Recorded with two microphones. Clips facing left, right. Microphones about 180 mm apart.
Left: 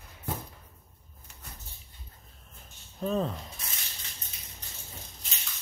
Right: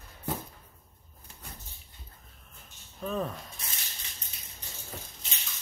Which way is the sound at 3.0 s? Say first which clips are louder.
Left 3 dB; 25° left (ahead or behind).